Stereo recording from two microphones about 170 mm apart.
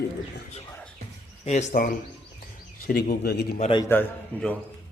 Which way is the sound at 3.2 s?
75° left (ahead or behind).